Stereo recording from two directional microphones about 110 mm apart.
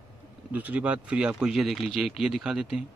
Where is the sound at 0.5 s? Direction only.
15° right (ahead or behind).